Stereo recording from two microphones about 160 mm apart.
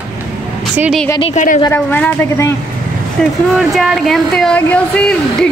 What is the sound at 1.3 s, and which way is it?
Speech, 50° left (ahead or behind).